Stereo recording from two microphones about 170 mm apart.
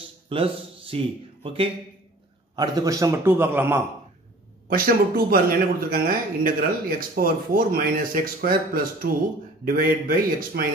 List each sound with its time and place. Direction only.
0.3 s a man's voice: 35° right (ahead or behind)
2.5 s a man's voice: 25° right (ahead or behind)
4.6 s speech: 60° right (ahead or behind)